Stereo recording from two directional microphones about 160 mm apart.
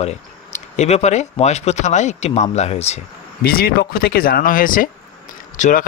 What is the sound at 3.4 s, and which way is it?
Speech, 70° left (ahead or behind).